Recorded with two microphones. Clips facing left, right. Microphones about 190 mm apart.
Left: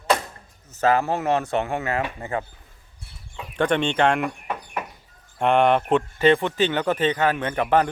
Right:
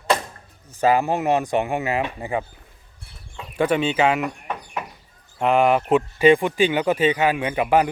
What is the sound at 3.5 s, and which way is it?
Speech, 5° right (ahead or behind).